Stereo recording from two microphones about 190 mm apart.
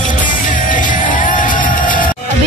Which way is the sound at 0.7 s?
45° left (ahead or behind).